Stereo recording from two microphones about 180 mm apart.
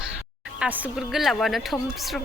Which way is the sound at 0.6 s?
Centre (ahead or behind).